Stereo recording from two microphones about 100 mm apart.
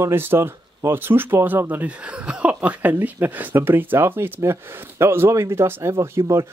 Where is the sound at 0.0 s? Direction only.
20° right (ahead or behind).